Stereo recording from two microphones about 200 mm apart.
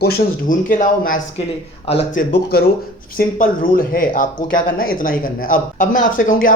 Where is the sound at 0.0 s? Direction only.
45° left (ahead or behind).